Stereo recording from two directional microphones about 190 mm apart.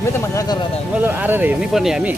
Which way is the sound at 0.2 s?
15° left (ahead or behind).